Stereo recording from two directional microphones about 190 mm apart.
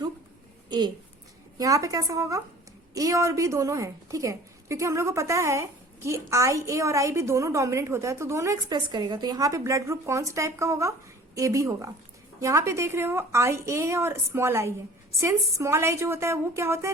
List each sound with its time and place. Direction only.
1.5 s a woman's voice: 20° right (ahead or behind)